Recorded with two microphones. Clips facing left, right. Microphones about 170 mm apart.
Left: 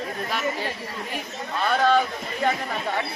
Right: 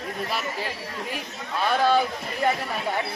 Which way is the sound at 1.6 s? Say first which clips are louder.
Left 1 dB; 10° right (ahead or behind).